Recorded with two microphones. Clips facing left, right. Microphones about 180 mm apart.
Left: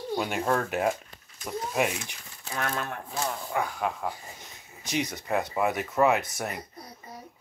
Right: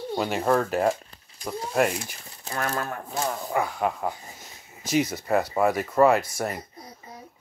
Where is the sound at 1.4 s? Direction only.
30° right (ahead or behind).